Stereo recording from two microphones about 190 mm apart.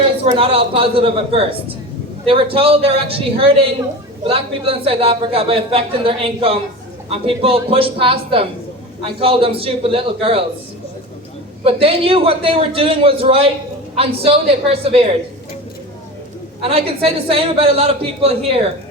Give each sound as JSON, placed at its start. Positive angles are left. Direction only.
{"t": 0.3, "sound": "a man's voice", "side_deg": -30}
{"t": 11.6, "sound": "a man's voice", "side_deg": -30}
{"t": 16.6, "sound": "a man's voice", "side_deg": -30}